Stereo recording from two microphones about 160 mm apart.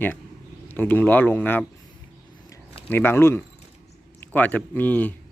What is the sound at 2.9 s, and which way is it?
A man's voice, 15° left (ahead or behind).